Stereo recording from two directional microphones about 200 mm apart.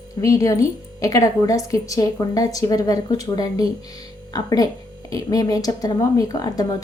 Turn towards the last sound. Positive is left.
turn(degrees=20)  # may be behind; listen again after turning